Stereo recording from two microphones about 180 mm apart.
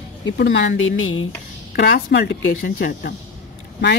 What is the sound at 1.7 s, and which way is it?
Speech, 70° left (ahead or behind).